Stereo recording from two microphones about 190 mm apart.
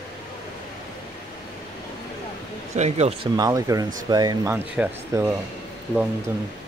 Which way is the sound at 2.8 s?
35° right (ahead or behind).